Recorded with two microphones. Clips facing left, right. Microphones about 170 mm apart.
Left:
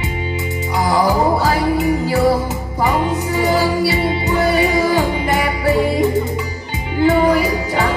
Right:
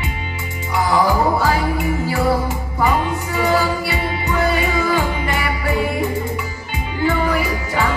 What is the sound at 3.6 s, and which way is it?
Music, 35° left (ahead or behind).